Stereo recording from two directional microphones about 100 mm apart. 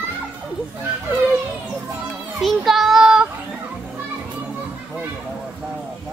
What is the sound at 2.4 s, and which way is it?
Child singing, centre (ahead or behind).